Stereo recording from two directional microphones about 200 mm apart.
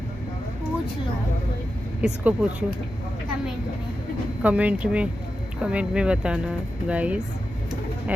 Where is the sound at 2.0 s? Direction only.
5° right (ahead or behind).